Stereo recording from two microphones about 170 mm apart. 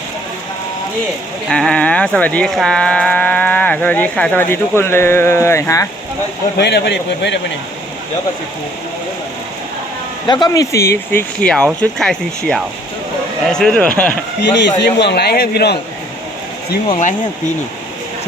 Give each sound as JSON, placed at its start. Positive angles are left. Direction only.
{"t": 1.5, "sound": "speech", "side_deg": 5}
{"t": 6.6, "sound": "a man's voice", "side_deg": 75}
{"t": 10.2, "sound": "speech", "side_deg": 25}
{"t": 14.4, "sound": "a man's voice", "side_deg": 90}